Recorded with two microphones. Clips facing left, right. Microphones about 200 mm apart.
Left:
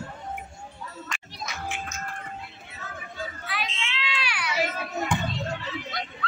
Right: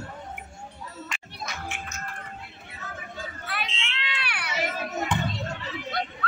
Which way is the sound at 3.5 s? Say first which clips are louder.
Right 1 dB; 60° right (ahead or behind).